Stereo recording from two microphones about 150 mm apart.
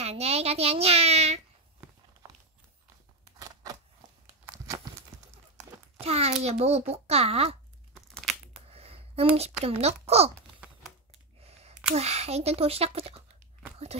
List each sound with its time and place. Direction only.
0.0 s a child's voice: 45° right (ahead or behind)
3.3 s scissors: 25° right (ahead or behind)
5.9 s a child's voice: 45° right (ahead or behind)
7.9 s crumpling: 5° left (ahead or behind)
8.7 s a sound: 40° right (ahead or behind)
9.6 s a child's voice: 40° right (ahead or behind)
10.6 s typewriter: 5° right (ahead or behind)
11.4 s a sound: 45° right (ahead or behind)
11.9 s a child's voice: 45° right (ahead or behind)